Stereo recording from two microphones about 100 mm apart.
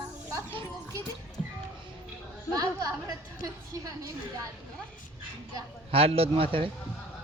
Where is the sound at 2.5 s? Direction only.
35° right (ahead or behind).